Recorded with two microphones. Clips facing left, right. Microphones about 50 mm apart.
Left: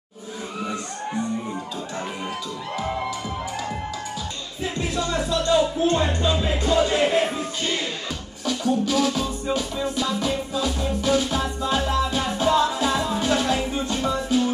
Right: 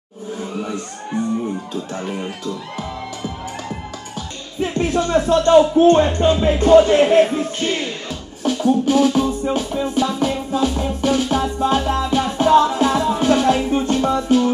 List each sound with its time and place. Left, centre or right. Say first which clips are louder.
4.6 s music: right 8 dB; right
8.6 s music: right 6 dB; right